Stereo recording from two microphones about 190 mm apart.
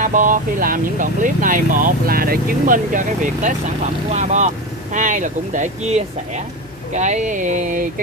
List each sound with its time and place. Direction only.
0.0 s speech: 45° right (ahead or behind)